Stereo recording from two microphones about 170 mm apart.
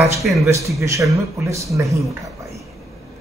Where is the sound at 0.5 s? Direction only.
15° right (ahead or behind).